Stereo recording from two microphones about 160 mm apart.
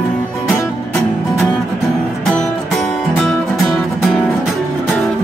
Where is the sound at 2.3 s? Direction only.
5° left (ahead or behind).